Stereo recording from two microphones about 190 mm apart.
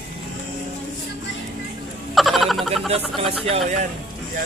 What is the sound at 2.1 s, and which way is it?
Frog, centre (ahead or behind).